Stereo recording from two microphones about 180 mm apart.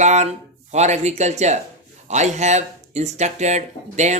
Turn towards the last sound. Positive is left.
turn(degrees=-40)  # may be behind; listen again after turning